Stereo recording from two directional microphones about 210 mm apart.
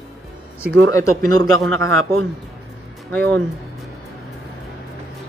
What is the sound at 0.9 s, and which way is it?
Speech, 15° left (ahead or behind).